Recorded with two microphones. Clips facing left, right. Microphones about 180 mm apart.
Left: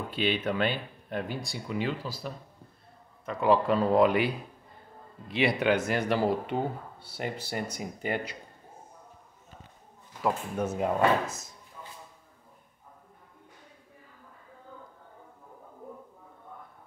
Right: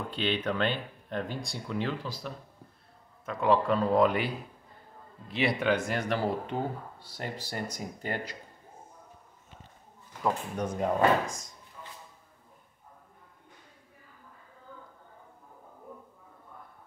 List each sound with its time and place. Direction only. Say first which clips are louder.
0.1 s speech: left 2 dB; 10° left (ahead or behind)
5.3 s speech: left 2 dB; centre (ahead or behind)
10.2 s speech: left 1 dB; 5° left (ahead or behind)